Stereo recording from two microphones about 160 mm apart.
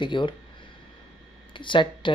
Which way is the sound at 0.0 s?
30° left (ahead or behind).